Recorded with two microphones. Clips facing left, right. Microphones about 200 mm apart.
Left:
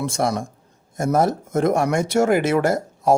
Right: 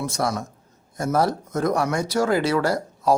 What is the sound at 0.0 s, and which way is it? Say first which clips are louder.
Speech: left 3 dB; 25° left (ahead or behind).